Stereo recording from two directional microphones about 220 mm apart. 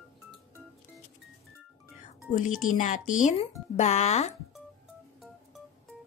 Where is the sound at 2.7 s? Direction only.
35° left (ahead or behind).